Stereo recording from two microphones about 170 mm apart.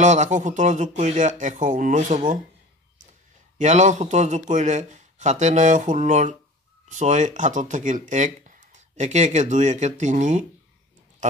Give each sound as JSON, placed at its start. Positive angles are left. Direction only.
{"t": 0.0, "sound": "speech", "side_deg": -45}
{"t": 3.5, "sound": "speech", "side_deg": -45}